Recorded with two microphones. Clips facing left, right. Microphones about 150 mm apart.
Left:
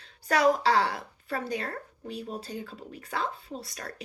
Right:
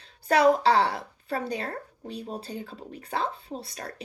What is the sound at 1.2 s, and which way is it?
Speech, 30° right (ahead or behind).